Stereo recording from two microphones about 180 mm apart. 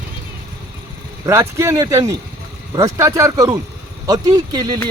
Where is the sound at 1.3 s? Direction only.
15° right (ahead or behind).